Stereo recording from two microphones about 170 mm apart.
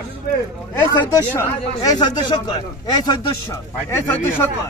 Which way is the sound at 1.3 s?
25° left (ahead or behind).